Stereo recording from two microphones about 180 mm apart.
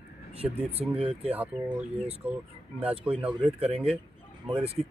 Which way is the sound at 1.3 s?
10° right (ahead or behind).